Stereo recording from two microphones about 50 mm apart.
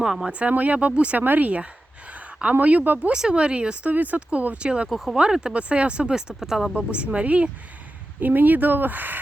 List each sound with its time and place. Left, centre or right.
0.0 s speech: centre
0.3 s speech: right
1.2 s speech: right
2.8 s speech: right
3.1 s speech: centre
3.9 s speech: right
4.9 s speech: centre
5.1 s speech: centre
6.7 s speech: right
8.2 s speech: right